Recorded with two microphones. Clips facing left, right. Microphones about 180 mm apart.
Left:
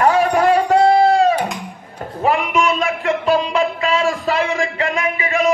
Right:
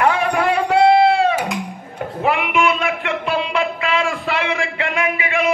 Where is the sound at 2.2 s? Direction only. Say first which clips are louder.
Left 1 dB; 40° left (ahead or behind).